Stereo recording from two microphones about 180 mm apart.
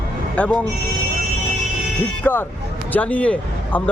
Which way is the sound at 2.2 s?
10° left (ahead or behind).